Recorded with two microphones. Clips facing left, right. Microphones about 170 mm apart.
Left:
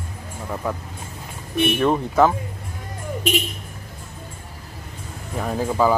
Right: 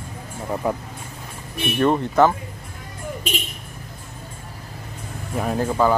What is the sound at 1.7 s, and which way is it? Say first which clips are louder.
Speech: right 3 dB; centre (ahead or behind).